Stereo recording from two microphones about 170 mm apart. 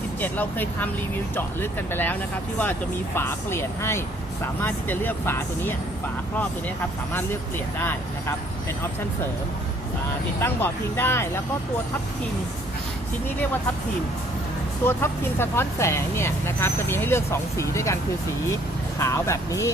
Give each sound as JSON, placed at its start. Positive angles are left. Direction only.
{"t": 0.2, "sound": "speech", "side_deg": 10}
{"t": 3.2, "sound": "speech", "side_deg": 15}
{"t": 7.1, "sound": "speech", "side_deg": 10}
{"t": 10.4, "sound": "speech", "side_deg": 15}
{"t": 14.8, "sound": "speech", "side_deg": 15}
{"t": 18.9, "sound": "speech", "side_deg": 15}